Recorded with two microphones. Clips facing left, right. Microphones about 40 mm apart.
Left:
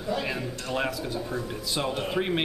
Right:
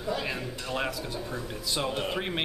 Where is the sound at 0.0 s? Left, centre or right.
Centre.